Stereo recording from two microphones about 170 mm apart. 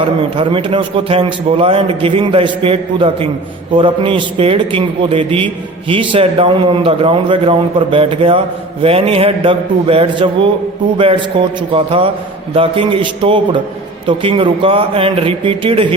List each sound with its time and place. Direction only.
0.2 s a man's voice: 30° right (ahead or behind)